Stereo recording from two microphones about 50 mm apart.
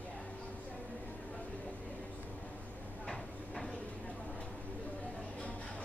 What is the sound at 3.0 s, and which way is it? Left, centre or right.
Train, centre.